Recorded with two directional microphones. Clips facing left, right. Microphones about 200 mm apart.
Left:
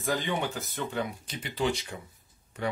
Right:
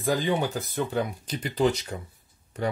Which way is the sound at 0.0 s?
35° right (ahead or behind).